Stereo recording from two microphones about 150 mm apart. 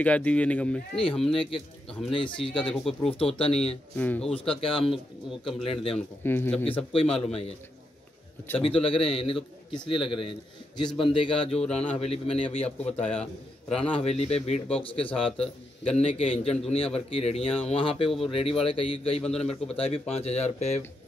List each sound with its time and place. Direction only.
0.0 s speech: 10° left (ahead or behind)
2.1 s a man's voice: 35° left (ahead or behind)
2.6 s speech: centre (ahead or behind)
3.1 s a man's voice: 40° left (ahead or behind)
3.9 s speech: 10° left (ahead or behind)
4.6 s a man's voice: 35° left (ahead or behind)
4.9 s speech: centre (ahead or behind)
5.6 s a man's voice: 40° left (ahead or behind)
6.2 s speech: 15° left (ahead or behind)
6.8 s a man's voice: 40° left (ahead or behind)
8.5 s a man's voice: 40° left (ahead or behind)
10.9 s speech: centre (ahead or behind)
11.1 s a man's voice: 35° left (ahead or behind)